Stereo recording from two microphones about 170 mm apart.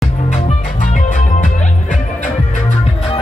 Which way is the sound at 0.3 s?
45° left (ahead or behind).